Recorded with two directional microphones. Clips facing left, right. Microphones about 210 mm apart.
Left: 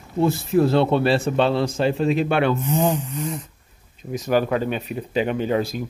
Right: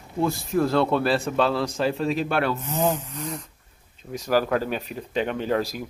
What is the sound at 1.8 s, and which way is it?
Speech, centre (ahead or behind).